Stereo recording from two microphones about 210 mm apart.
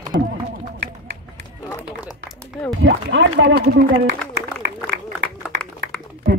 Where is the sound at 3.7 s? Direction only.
50° right (ahead or behind).